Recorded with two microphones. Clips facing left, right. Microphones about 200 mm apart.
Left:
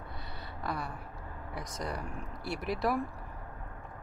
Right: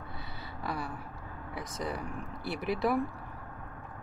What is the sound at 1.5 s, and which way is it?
Speech, centre (ahead or behind).